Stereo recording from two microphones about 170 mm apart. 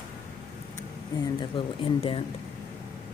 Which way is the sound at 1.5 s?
30° left (ahead or behind).